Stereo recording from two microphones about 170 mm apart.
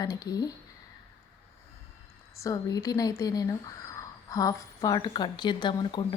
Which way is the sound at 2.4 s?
20° left (ahead or behind).